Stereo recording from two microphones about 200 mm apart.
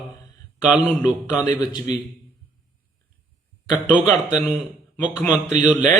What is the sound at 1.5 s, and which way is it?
Speech, 20° left (ahead or behind).